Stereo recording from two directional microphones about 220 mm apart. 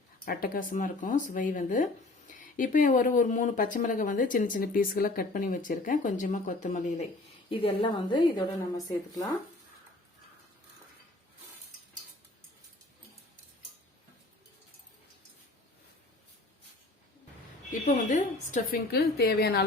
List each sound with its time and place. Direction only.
0.3 s a woman's voice: 40° left (ahead or behind); by 9.3 s 15° left (ahead or behind)
17.7 s a woman's voice: 35° left (ahead or behind)